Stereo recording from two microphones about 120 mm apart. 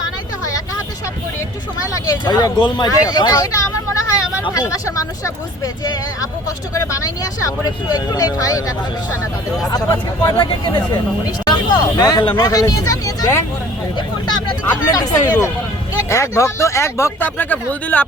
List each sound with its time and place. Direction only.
2.0 s speech: 35° left (ahead or behind)
7.4 s speech: 35° left (ahead or behind)
9.7 s speech: 35° left (ahead or behind); by 18.0 s 15° left (ahead or behind)